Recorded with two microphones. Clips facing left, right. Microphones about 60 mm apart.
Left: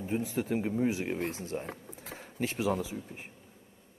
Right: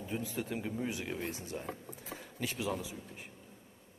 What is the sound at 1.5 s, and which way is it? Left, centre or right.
Speech, left.